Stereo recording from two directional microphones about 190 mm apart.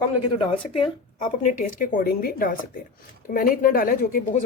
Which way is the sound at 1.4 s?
45° left (ahead or behind).